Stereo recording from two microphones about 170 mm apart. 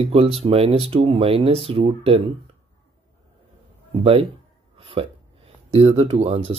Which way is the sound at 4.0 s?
30° right (ahead or behind).